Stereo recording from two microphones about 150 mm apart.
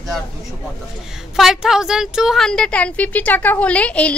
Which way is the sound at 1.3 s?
5° right (ahead or behind).